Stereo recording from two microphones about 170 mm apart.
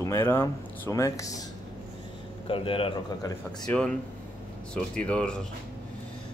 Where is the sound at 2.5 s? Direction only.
30° left (ahead or behind).